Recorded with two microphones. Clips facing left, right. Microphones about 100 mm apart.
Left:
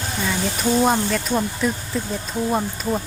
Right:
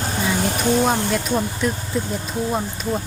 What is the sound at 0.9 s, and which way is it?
Speech, centre (ahead or behind).